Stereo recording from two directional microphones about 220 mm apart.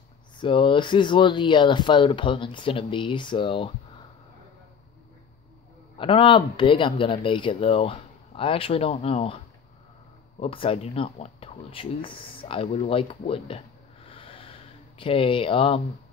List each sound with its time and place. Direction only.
0.4 s speech: 20° left (ahead or behind)
5.9 s speech: 25° left (ahead or behind)
10.4 s speech: 25° left (ahead or behind)
14.0 s a sound: 25° left (ahead or behind)
15.0 s speech: 25° left (ahead or behind)